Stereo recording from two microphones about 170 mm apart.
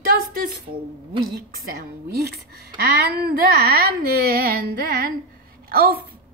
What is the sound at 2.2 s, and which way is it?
A woman's voice, 65° right (ahead or behind).